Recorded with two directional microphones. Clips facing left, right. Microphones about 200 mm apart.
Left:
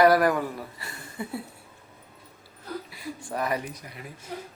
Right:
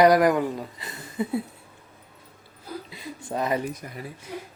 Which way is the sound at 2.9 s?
20° right (ahead or behind).